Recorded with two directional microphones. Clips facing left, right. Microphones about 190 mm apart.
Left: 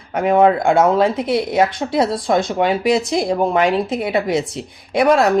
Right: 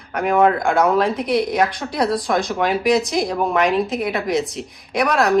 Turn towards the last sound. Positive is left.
turn(degrees=25)  # may be behind; listen again after turning